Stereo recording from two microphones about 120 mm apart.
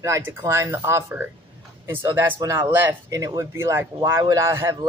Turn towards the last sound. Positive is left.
turn(degrees=-25)  # may be behind; listen again after turning